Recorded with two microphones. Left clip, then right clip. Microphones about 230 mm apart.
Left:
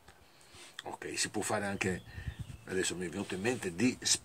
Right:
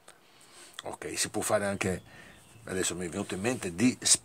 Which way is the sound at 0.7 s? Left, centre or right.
Right.